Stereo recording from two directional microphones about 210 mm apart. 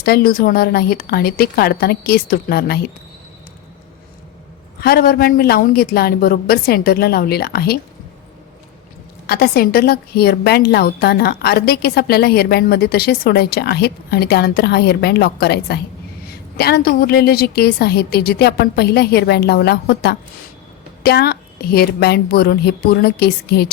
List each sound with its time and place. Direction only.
0.0 s a woman's voice: 45° left (ahead or behind)
4.8 s a woman's voice: 45° left (ahead or behind)
9.2 s a woman's voice: 45° left (ahead or behind)